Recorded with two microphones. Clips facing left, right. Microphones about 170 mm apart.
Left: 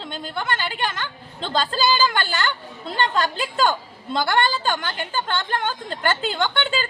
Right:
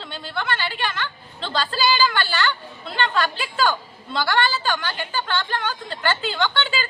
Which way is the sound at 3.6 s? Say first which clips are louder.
Even; 50° left (ahead or behind).